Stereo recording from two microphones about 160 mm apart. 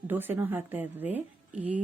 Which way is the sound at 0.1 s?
10° right (ahead or behind).